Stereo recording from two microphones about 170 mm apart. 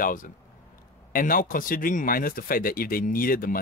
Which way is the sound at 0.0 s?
55° left (ahead or behind).